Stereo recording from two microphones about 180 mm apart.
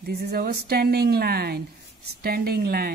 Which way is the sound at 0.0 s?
60° right (ahead or behind).